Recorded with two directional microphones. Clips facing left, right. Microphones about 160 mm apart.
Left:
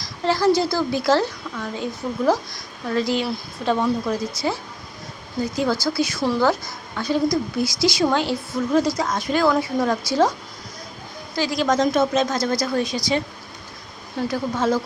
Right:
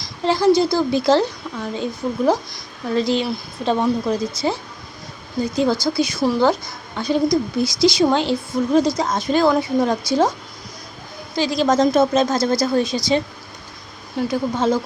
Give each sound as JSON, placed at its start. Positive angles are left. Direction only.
{"t": 0.0, "sound": "a woman's voice", "side_deg": -20}
{"t": 11.3, "sound": "speech", "side_deg": -25}
{"t": 14.2, "sound": "speech", "side_deg": -20}